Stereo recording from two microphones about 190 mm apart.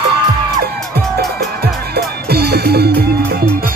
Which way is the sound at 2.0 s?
55° right (ahead or behind).